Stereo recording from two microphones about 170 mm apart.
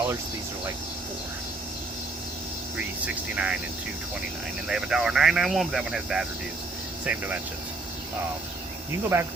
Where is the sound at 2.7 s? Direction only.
5° right (ahead or behind).